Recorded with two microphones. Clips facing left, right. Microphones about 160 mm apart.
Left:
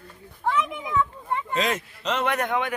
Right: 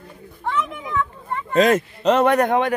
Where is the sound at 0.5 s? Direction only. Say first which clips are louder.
Even; 10° left (ahead or behind).